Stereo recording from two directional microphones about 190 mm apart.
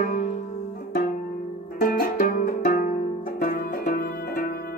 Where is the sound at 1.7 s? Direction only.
50° left (ahead or behind).